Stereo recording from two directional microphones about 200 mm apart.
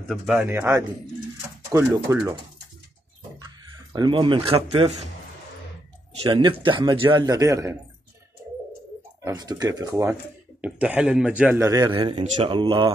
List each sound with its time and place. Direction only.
0.1 s a man's voice: 5° right (ahead or behind)
3.9 s speech: 20° right (ahead or behind)
6.2 s a man's voice: 25° right (ahead or behind)
9.2 s a man's voice: 20° right (ahead or behind)